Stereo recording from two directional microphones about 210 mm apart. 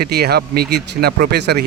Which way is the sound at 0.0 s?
50° right (ahead or behind).